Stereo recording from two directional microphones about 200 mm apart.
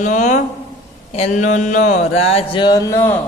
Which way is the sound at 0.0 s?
40° left (ahead or behind).